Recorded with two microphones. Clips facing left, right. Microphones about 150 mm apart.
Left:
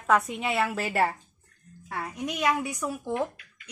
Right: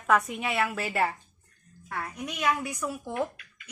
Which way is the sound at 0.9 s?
35° left (ahead or behind).